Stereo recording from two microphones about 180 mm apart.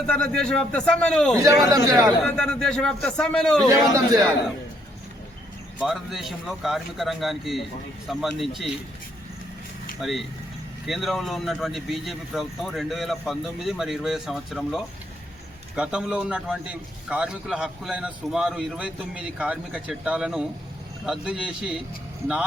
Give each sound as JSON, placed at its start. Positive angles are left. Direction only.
{"t": 0.1, "sound": "a man's voice", "side_deg": 5}
{"t": 1.4, "sound": "a man's voice", "side_deg": -20}
{"t": 2.2, "sound": "a man's voice", "side_deg": 5}
{"t": 3.7, "sound": "a man's voice", "side_deg": -20}
{"t": 5.8, "sound": "a man's voice", "side_deg": 0}
{"t": 10.0, "sound": "a man's voice", "side_deg": 0}